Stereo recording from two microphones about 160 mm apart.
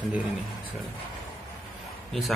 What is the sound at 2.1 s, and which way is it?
Speech, centre (ahead or behind).